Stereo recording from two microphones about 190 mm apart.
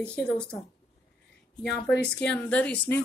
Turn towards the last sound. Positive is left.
turn(degrees=5)  # may be behind; listen again after turning